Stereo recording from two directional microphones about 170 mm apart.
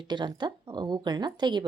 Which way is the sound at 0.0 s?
25° right (ahead or behind).